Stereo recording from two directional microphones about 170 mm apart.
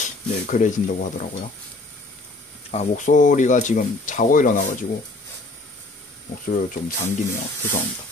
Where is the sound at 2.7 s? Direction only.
45° left (ahead or behind).